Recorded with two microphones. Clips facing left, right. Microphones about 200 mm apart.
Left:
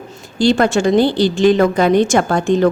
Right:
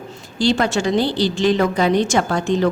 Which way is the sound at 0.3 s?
50° left (ahead or behind).